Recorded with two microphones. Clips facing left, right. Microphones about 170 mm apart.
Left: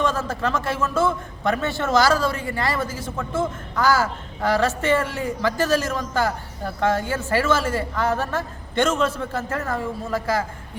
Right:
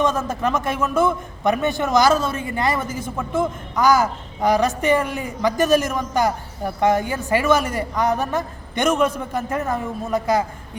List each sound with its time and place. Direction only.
0.0 s a man's voice: 20° right (ahead or behind)